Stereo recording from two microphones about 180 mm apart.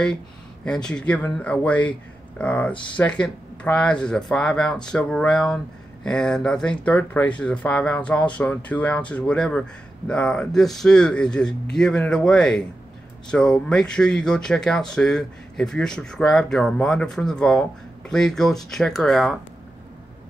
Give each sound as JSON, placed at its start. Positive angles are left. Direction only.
{"t": 0.7, "sound": "speech", "side_deg": 5}
{"t": 2.7, "sound": "speech", "side_deg": 25}
{"t": 3.0, "sound": "speech", "side_deg": 5}